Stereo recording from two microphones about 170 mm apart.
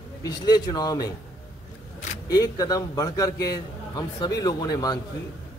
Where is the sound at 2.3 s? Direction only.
20° left (ahead or behind).